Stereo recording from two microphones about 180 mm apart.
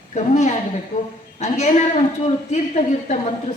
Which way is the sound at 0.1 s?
40° left (ahead or behind).